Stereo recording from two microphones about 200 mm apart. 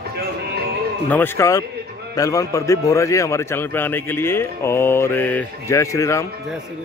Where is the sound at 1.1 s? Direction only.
10° left (ahead or behind).